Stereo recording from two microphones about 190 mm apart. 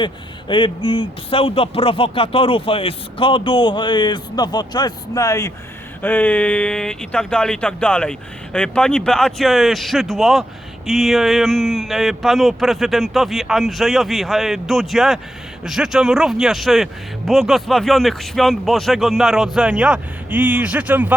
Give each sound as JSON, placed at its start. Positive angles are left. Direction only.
{"t": 0.0, "sound": "a man's voice", "side_deg": 25}